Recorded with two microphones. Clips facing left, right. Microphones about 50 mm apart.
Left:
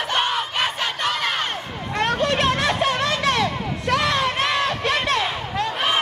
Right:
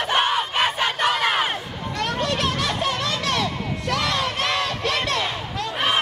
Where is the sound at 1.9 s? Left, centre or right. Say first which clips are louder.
Left 4 dB; left.